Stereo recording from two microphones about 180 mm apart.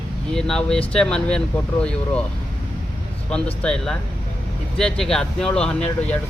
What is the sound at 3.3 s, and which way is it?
Speech, 5° left (ahead or behind).